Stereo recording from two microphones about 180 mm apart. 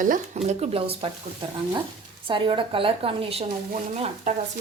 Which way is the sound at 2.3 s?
30° right (ahead or behind).